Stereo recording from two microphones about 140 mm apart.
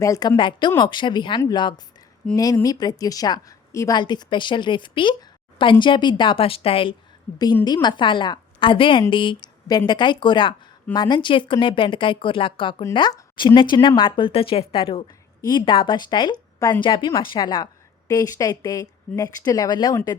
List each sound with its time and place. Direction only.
0.0 s a woman's voice: 25° left (ahead or behind); by 6.9 s 40° left (ahead or behind)
7.6 s a woman's voice: 30° left (ahead or behind)